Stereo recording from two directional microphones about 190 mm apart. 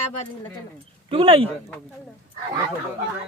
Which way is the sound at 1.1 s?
30° right (ahead or behind).